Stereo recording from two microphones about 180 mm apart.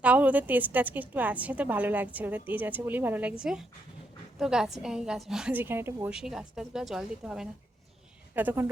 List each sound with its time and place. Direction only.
0.0 s a woman's voice: 10° right (ahead or behind)